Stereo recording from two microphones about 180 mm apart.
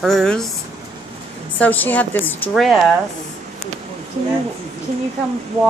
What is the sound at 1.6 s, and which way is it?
Speech, 10° left (ahead or behind).